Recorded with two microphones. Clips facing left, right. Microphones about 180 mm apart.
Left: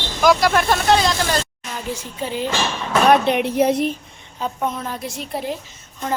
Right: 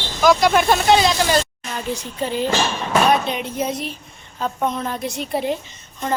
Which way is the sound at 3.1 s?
65° left (ahead or behind).